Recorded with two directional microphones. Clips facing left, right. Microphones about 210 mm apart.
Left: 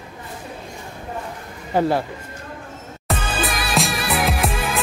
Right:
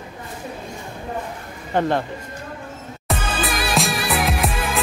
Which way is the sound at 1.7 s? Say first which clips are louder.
Left 1 dB; 5° left (ahead or behind).